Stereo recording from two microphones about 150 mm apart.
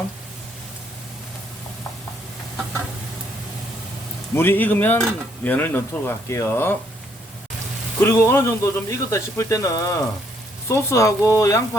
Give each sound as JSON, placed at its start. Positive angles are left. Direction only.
{"t": 4.4, "sound": "dishes", "side_deg": 15}
{"t": 8.0, "sound": "speech", "side_deg": 15}